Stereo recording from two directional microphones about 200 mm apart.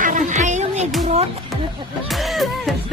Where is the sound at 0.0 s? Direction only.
40° right (ahead or behind).